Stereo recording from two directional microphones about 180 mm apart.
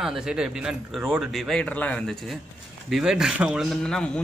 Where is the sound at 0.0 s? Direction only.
5° right (ahead or behind).